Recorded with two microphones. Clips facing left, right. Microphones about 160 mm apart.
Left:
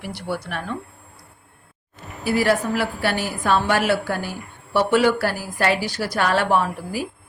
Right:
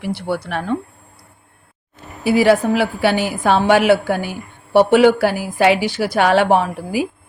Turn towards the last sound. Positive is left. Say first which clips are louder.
# right 4 dB
turn(degrees=-70)  # may be behind; listen again after turning